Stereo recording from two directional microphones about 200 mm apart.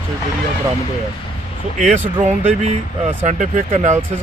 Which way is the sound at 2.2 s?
35° right (ahead or behind).